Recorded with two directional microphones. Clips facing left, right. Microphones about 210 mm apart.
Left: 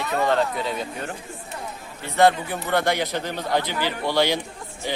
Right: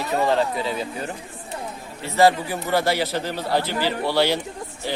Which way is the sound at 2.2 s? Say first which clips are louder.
Right 1 dB; centre (ahead or behind).